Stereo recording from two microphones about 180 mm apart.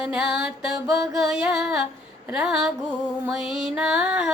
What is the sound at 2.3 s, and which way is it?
Female singing, 5° right (ahead or behind).